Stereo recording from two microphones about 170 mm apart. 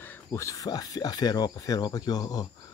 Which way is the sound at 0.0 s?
15° left (ahead or behind).